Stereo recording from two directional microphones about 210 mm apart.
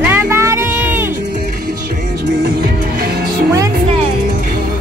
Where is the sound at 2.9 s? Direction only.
45° right (ahead or behind).